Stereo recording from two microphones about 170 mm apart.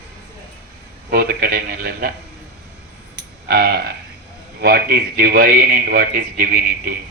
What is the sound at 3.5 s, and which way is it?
A man's voice, 70° right (ahead or behind).